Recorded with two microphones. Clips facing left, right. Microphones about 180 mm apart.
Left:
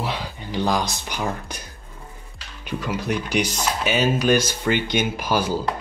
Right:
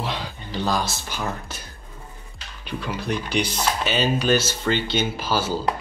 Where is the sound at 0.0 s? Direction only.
10° left (ahead or behind).